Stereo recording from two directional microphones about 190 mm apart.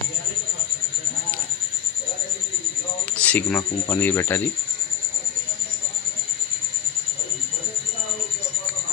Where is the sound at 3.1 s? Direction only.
5° left (ahead or behind).